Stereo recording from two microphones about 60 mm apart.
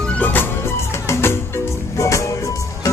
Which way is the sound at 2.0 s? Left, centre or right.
Left.